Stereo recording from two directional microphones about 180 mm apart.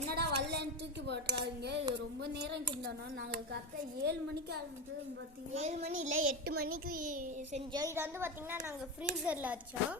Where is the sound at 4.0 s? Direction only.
60° right (ahead or behind).